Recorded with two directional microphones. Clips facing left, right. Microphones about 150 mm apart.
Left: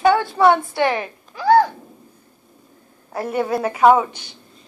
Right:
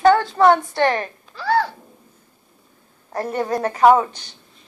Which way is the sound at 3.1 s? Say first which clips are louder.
Left 1 dB; 10° left (ahead or behind).